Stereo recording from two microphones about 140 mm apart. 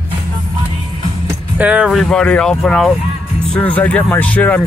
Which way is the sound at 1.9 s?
5° left (ahead or behind).